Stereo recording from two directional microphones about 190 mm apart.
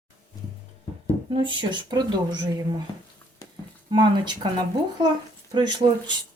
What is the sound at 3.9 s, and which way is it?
Speech, 25° right (ahead or behind).